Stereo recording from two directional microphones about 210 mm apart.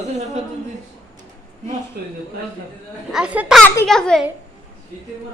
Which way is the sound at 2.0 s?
45° right (ahead or behind).